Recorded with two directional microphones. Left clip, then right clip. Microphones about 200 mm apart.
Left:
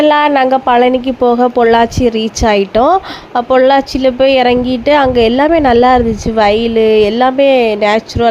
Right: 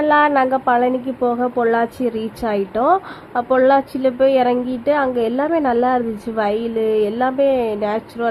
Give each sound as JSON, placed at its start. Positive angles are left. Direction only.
{"t": 0.0, "sound": "speech", "side_deg": 35}